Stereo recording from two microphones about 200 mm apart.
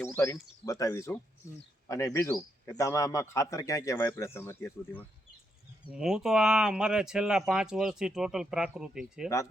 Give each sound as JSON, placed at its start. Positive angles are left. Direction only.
{"t": 0.0, "sound": "speech", "side_deg": 10}
{"t": 5.9, "sound": "speech", "side_deg": -5}